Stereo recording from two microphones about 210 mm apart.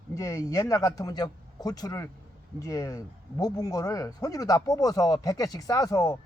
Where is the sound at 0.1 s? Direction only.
15° left (ahead or behind).